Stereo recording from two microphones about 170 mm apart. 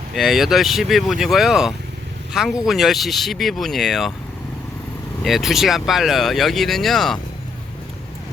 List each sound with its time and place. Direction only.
0.1 s speech: centre (ahead or behind)
5.2 s speech: centre (ahead or behind)